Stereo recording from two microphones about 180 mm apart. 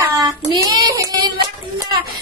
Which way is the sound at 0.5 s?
20° right (ahead or behind).